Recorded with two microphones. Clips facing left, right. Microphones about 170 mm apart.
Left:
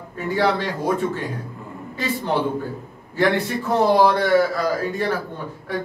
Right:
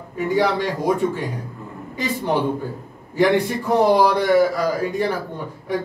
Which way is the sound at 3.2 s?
15° right (ahead or behind).